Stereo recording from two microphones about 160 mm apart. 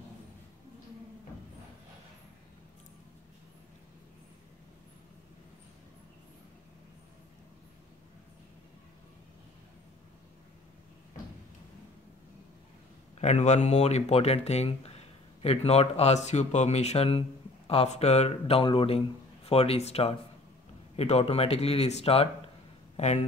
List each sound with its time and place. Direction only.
13.2 s speech: 45° left (ahead or behind)